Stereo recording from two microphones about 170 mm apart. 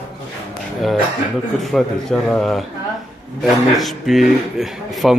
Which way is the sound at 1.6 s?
5° left (ahead or behind).